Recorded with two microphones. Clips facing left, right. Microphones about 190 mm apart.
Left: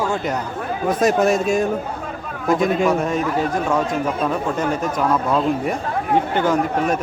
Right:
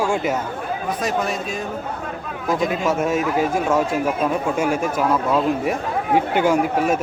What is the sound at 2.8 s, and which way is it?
A man's voice, 5° right (ahead or behind).